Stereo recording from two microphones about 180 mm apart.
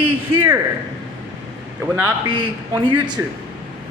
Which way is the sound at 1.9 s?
20° right (ahead or behind).